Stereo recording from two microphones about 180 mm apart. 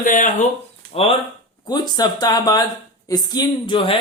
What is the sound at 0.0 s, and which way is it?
Speech, 45° left (ahead or behind).